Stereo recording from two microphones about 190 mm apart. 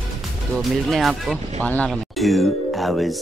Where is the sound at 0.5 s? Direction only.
Centre (ahead or behind).